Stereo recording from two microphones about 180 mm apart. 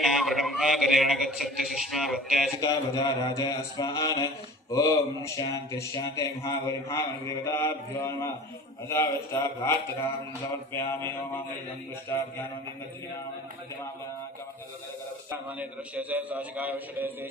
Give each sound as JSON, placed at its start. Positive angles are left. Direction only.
{"t": 0.0, "sound": "a man's voice", "side_deg": 0}
{"t": 2.6, "sound": "a sound", "side_deg": 20}
{"t": 6.8, "sound": "speech", "side_deg": 15}
{"t": 15.3, "sound": "a man's voice", "side_deg": -10}